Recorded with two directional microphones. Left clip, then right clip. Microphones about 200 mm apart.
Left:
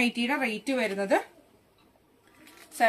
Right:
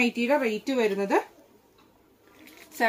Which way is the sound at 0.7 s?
20° left (ahead or behind).